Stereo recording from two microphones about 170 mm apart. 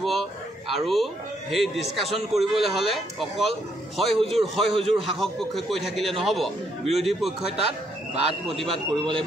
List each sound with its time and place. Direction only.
0.0 s speech: centre (ahead or behind)
4.6 s a man's voice: 35° right (ahead or behind)
5.2 s speech: centre (ahead or behind)
8.6 s a man's voice: 30° right (ahead or behind)